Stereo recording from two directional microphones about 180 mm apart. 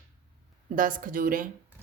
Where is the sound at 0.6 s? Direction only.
50° right (ahead or behind).